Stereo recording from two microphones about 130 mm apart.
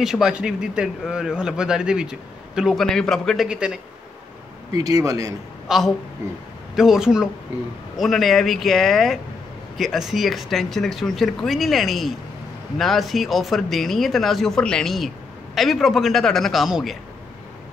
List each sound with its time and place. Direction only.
0.0 s a man's voice: 5° right (ahead or behind)
3.4 s speech: 5° right (ahead or behind)
4.7 s speech: 25° right (ahead or behind)
5.7 s a man's voice: centre (ahead or behind)